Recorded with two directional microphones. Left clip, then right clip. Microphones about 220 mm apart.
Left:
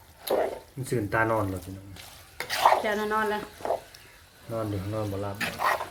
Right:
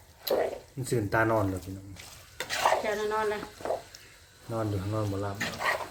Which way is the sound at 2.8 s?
20° left (ahead or behind).